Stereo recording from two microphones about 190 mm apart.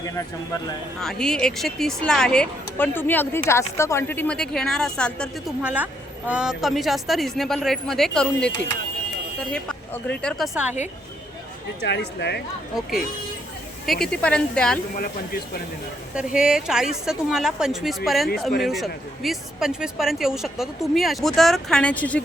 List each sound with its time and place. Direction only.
0.9 s speech: 5° left (ahead or behind)
5.6 s speech: 10° right (ahead or behind)
11.8 s speech: 65° left (ahead or behind)
12.7 s speech: centre (ahead or behind)
14.9 s speech: 50° left (ahead or behind)
16.1 s speech: 5° right (ahead or behind)